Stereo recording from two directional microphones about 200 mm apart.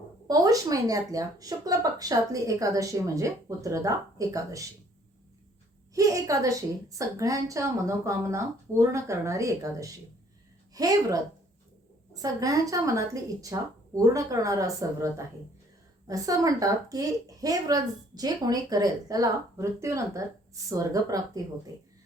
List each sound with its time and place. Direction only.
0.3 s a woman's voice: 20° right (ahead or behind)
5.9 s a woman's voice: 15° right (ahead or behind)